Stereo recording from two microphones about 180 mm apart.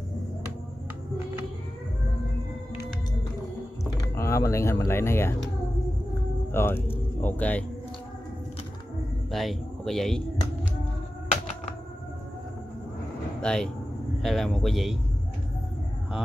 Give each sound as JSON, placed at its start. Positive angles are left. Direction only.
{"t": 4.1, "sound": "speech", "side_deg": 15}
{"t": 6.5, "sound": "speech", "side_deg": 10}
{"t": 9.3, "sound": "speech", "side_deg": 0}
{"t": 13.4, "sound": "speech", "side_deg": 5}